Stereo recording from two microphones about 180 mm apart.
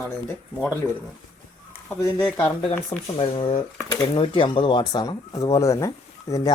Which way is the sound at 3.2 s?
30° left (ahead or behind).